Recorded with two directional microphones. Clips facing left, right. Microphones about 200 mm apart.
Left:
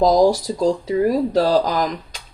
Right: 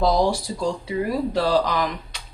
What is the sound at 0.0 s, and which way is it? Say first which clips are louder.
Speech: left 6 dB; 40° left (ahead or behind).